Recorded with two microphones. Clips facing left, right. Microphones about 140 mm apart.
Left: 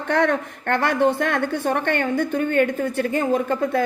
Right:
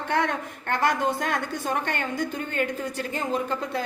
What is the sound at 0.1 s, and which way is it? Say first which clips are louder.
A woman's voice: left 6 dB; 55° left (ahead or behind).